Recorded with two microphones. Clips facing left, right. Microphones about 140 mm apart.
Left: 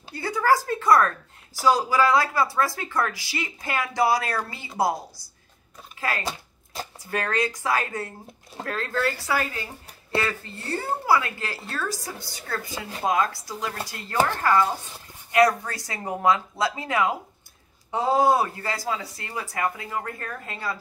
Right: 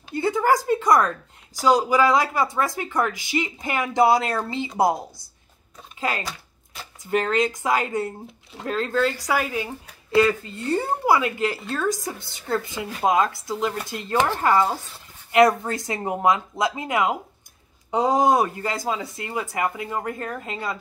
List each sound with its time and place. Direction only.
0.1 s a woman's voice: 20° right (ahead or behind)
6.2 s shuffling cards: 35° left (ahead or behind)
7.1 s a woman's voice: 20° right (ahead or behind)